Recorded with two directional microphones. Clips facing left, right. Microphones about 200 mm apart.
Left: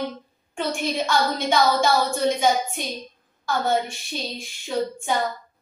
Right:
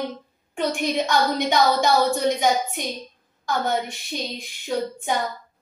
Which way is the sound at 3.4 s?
20° right (ahead or behind).